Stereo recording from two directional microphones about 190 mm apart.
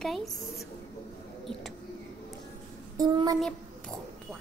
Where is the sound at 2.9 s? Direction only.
20° right (ahead or behind).